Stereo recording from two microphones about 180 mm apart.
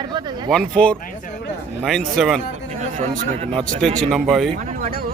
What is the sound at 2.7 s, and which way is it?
A man's voice, 40° right (ahead or behind).